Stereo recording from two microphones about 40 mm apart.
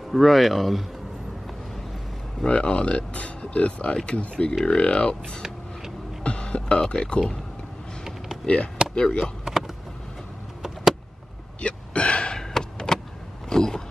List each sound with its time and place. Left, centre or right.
0.1 s speech: centre
2.4 s speech: left
8.9 s speech: left
9.4 s vehicle: centre
11.6 s hiccup: left
12.4 s door: centre
13.5 s a sound: centre